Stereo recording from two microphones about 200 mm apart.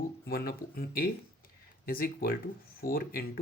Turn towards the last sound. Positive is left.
turn(degrees=50)  # may be behind; listen again after turning